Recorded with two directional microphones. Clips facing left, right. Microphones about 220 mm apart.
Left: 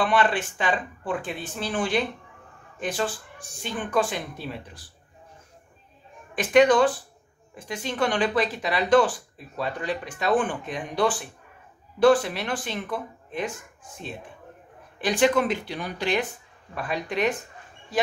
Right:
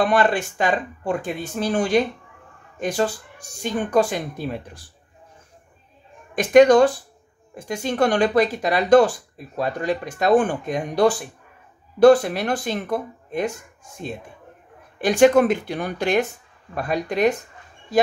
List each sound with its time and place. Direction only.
0.0 s speech: 45° right (ahead or behind)
6.3 s speech: 45° right (ahead or behind)
15.0 s speech: 45° right (ahead or behind)